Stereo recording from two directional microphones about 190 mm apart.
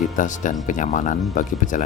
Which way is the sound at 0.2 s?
40° left (ahead or behind).